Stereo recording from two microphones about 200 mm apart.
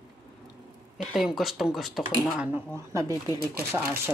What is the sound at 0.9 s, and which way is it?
Speech, centre (ahead or behind).